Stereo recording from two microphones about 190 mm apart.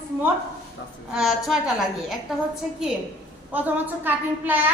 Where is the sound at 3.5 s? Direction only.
10° right (ahead or behind).